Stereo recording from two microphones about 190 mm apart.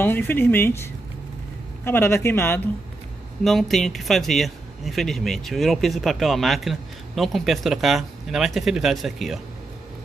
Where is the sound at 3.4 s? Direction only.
Centre (ahead or behind).